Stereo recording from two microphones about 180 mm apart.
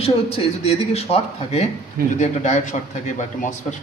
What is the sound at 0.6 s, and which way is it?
A man's voice, 35° left (ahead or behind).